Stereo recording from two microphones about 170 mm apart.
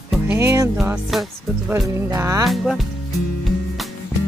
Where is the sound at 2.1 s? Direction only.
20° right (ahead or behind).